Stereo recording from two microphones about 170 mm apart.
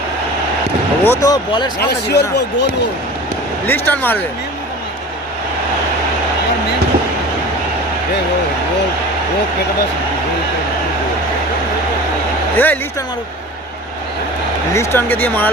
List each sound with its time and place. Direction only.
1.0 s speech: 15° left (ahead or behind)
1.8 s speech: 75° left (ahead or behind)
3.7 s speech: 10° left (ahead or behind)
12.5 s speech: 10° left (ahead or behind)
14.7 s speech: 15° left (ahead or behind)